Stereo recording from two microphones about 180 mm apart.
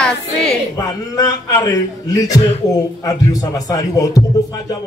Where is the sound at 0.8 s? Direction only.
20° left (ahead or behind).